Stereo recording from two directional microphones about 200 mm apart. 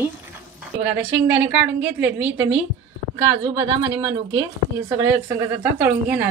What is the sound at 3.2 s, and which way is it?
A woman's voice, 25° right (ahead or behind).